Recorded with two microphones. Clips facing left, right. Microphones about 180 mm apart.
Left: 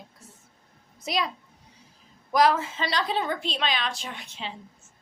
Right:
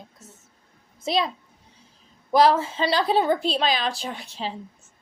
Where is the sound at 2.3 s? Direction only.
30° right (ahead or behind).